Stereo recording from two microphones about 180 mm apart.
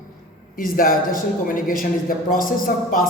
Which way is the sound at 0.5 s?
50° left (ahead or behind).